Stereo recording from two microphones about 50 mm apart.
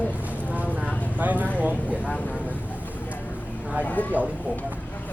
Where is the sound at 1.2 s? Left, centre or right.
Right.